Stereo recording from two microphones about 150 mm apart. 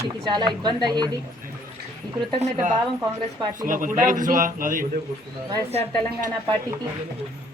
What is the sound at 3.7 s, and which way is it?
A man's voice, 65° right (ahead or behind).